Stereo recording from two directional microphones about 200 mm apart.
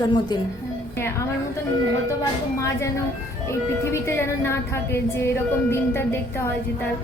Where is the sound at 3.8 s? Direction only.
15° left (ahead or behind).